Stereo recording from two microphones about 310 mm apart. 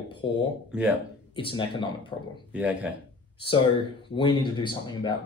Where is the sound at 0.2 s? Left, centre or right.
Centre.